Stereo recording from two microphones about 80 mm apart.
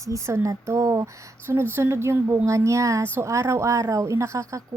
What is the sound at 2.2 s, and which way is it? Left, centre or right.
A woman's voice, right.